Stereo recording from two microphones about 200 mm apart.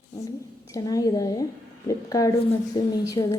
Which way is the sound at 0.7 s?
15° left (ahead or behind).